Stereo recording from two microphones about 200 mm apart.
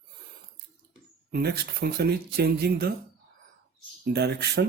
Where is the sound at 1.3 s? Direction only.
50° right (ahead or behind).